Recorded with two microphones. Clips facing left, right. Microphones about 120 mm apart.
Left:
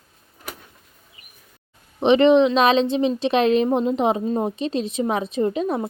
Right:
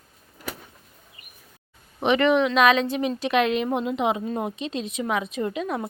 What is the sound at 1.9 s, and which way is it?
A woman's voice, 25° left (ahead or behind).